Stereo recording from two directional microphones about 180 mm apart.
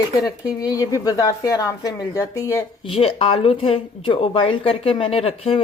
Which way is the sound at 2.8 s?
30° left (ahead or behind).